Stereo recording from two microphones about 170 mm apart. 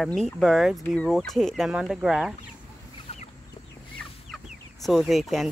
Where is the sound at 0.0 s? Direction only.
5° left (ahead or behind).